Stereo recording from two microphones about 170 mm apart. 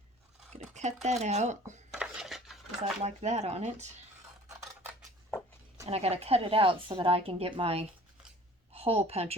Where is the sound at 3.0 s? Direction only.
40° right (ahead or behind).